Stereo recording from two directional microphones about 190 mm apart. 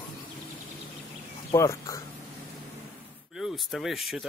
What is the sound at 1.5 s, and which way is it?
Speech, 15° left (ahead or behind).